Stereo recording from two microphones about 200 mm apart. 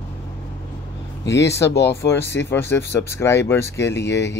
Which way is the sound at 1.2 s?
60° left (ahead or behind).